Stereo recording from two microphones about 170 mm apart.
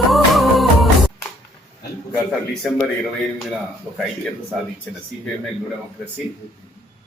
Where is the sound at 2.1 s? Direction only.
Centre (ahead or behind).